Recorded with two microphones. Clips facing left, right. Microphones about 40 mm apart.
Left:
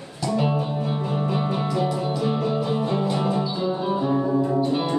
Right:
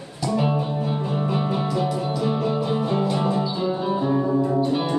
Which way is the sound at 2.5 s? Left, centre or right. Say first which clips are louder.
Right 1 dB; right.